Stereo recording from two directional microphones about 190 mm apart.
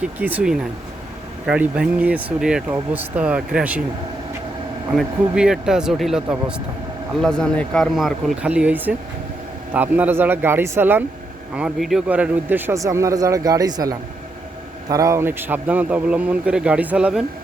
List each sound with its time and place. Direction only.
0.0 s a man's voice: 10° right (ahead or behind)
4.9 s a man's voice: 5° right (ahead or behind)